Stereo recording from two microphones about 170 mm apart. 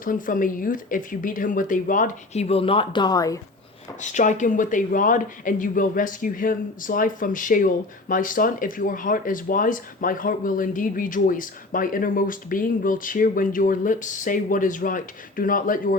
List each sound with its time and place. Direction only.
0.0 s speech: 50° left (ahead or behind); by 3.4 s 20° left (ahead or behind)
4.0 s speech: 45° left (ahead or behind)